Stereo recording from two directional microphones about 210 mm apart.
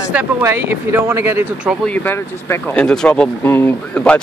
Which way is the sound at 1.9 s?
10° left (ahead or behind).